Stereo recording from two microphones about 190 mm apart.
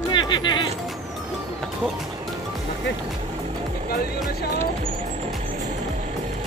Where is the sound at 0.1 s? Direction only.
25° left (ahead or behind).